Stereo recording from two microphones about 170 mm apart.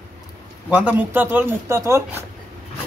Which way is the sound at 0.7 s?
10° right (ahead or behind).